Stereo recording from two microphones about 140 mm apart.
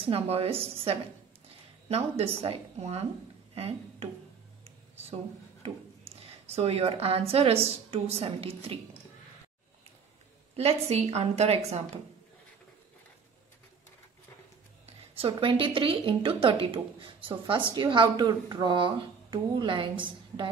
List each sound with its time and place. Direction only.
0.0 s a woman's voice: 45° right (ahead or behind)
5.6 s a woman's voice: 45° right (ahead or behind)
10.5 s a woman's voice: 50° right (ahead or behind)
15.1 s speech: 40° right (ahead or behind)